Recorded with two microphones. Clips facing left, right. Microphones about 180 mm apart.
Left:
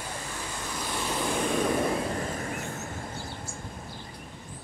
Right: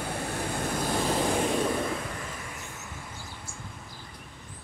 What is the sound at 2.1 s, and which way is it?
Vehicle, 40° left (ahead or behind).